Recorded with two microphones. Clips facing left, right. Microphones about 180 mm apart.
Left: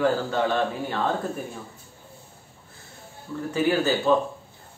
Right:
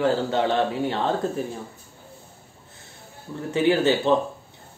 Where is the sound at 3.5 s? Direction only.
25° right (ahead or behind).